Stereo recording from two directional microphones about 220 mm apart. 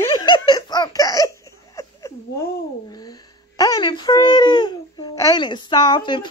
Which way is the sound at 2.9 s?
20° left (ahead or behind).